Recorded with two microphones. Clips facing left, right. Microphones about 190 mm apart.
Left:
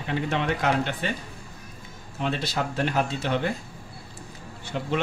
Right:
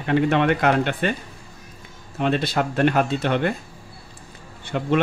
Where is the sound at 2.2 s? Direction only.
60° right (ahead or behind).